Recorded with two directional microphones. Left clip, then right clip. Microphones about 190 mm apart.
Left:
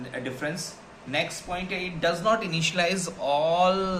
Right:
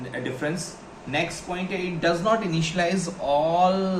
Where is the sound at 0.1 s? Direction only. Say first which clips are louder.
Right 3 dB; 25° left (ahead or behind).